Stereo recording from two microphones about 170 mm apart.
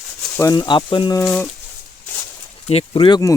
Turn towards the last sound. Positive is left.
turn(degrees=25)  # may be behind; listen again after turning